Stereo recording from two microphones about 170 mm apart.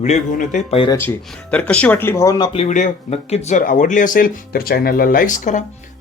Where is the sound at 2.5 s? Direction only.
45° left (ahead or behind).